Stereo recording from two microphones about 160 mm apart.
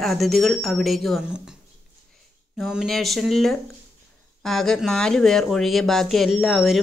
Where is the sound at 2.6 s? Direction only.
Centre (ahead or behind).